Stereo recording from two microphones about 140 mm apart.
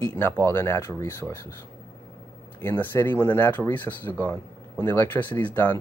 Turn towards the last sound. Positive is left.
turn(degrees=15)  # may be behind; listen again after turning